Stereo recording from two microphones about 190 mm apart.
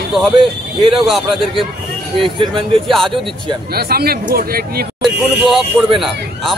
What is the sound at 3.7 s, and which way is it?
Speech, 55° right (ahead or behind).